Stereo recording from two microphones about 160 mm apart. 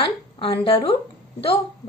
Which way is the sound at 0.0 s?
35° left (ahead or behind).